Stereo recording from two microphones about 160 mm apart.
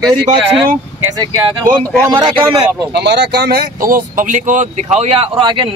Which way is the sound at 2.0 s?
30° right (ahead or behind).